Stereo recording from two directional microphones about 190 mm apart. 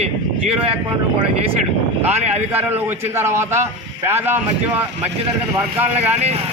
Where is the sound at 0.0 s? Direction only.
35° right (ahead or behind).